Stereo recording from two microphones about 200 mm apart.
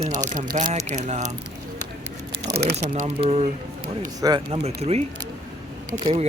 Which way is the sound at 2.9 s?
30° right (ahead or behind).